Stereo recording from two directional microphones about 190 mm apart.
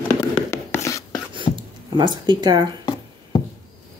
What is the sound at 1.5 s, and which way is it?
Squish, 25° right (ahead or behind).